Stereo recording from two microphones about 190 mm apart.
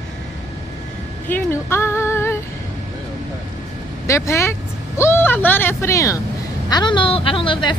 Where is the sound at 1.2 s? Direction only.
10° left (ahead or behind).